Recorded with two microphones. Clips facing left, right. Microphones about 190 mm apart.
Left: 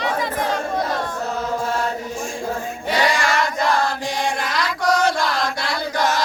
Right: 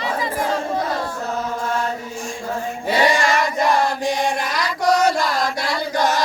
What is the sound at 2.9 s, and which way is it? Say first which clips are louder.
Child singing: right 2 dB; 10° right (ahead or behind).